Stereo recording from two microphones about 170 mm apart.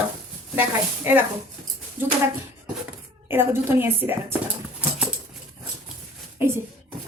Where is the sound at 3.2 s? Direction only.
15° right (ahead or behind).